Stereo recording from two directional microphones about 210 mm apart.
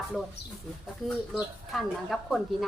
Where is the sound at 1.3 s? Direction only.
Centre (ahead or behind).